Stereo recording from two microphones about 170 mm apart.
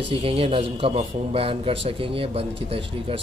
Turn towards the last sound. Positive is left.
turn(degrees=-35)  # may be behind; listen again after turning